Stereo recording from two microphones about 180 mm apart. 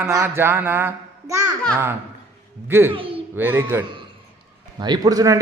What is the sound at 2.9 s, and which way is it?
Speech, 30° right (ahead or behind).